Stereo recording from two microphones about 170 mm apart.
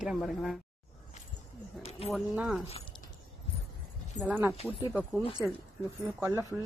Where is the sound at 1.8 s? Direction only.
35° left (ahead or behind).